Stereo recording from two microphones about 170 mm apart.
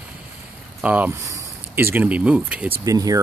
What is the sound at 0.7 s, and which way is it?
Speech, 10° right (ahead or behind).